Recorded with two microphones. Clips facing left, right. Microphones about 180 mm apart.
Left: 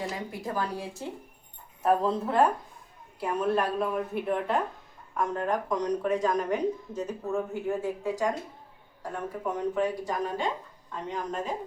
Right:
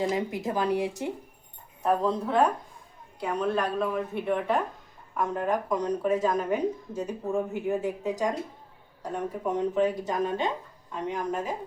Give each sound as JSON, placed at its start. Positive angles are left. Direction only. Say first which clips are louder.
{"t": 0.0, "sound": "speech", "louder": "right 6 dB", "side_deg": -20}
{"t": 1.8, "sound": "a woman's voice", "louder": "even", "side_deg": 5}
{"t": 10.9, "sound": "speech", "louder": "right 3 dB", "side_deg": -10}